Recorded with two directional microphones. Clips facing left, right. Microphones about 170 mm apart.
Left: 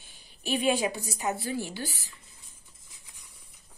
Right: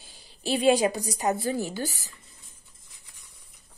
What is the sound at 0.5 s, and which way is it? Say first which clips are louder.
A woman's voice: right 5 dB; 40° right (ahead or behind).